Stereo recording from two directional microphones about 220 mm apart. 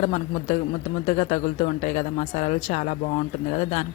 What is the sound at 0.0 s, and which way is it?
Speech, 30° left (ahead or behind).